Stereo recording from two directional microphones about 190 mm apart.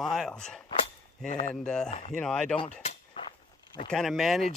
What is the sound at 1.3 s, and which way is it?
Speech, 35° left (ahead or behind).